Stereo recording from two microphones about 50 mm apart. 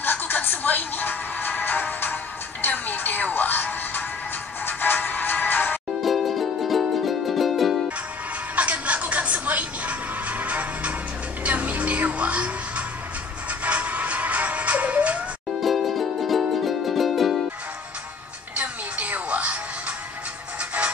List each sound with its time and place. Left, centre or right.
0.0 s music: left
6.0 s music: centre
8.5 s music: right
15.6 s music: centre
18.6 s music: right